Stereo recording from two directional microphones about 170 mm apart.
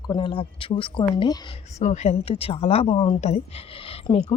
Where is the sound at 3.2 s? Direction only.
40° left (ahead or behind).